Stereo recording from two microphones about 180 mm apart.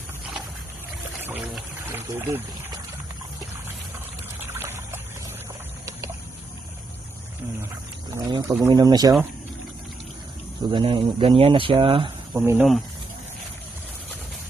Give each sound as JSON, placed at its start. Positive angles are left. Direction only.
{"t": 2.0, "sound": "speech", "side_deg": -10}
{"t": 4.4, "sound": "trickle", "side_deg": -15}
{"t": 8.3, "sound": "speech", "side_deg": -25}
{"t": 10.7, "sound": "speech", "side_deg": -30}
{"t": 12.3, "sound": "speech", "side_deg": -10}